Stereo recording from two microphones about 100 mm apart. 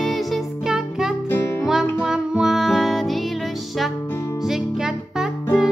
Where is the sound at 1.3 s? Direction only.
20° left (ahead or behind).